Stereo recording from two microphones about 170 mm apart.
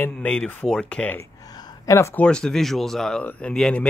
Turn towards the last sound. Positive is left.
turn(degrees=5)  # may be behind; listen again after turning